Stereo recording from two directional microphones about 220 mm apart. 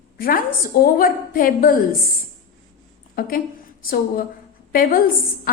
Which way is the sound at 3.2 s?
40° left (ahead or behind).